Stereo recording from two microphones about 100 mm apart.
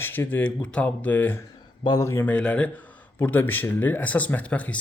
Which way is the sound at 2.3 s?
15° left (ahead or behind).